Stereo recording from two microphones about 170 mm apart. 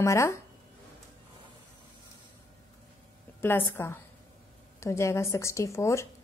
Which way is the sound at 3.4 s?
15° left (ahead or behind).